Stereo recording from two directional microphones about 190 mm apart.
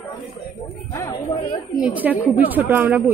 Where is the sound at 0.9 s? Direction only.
15° left (ahead or behind).